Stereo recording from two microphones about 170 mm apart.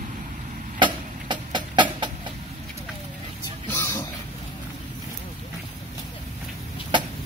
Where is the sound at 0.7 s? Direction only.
25° right (ahead or behind).